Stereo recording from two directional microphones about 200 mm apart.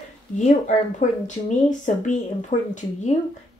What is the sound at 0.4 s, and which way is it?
Speech, 35° left (ahead or behind).